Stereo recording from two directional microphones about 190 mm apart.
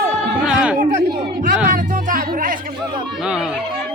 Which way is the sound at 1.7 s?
45° right (ahead or behind).